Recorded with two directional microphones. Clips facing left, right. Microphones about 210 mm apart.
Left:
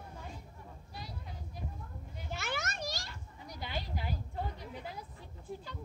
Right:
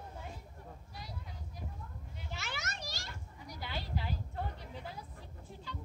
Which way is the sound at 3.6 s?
15° left (ahead or behind).